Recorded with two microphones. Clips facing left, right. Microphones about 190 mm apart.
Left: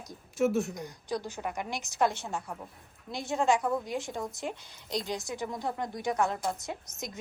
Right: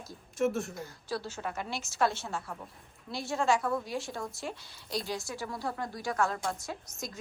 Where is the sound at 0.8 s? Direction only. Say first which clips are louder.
Left 2 dB; 15° left (ahead or behind).